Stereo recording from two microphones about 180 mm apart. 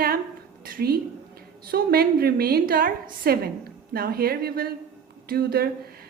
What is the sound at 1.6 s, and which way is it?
A woman's voice, 55° right (ahead or behind).